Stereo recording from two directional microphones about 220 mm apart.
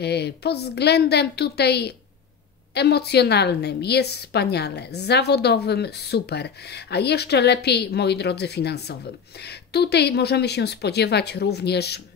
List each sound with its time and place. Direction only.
0.0 s a woman's voice: 50° left (ahead or behind)